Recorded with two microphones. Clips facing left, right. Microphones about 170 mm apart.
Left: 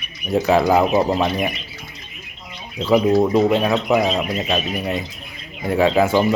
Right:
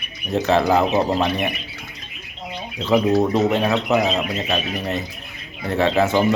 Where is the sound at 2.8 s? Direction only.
10° left (ahead or behind).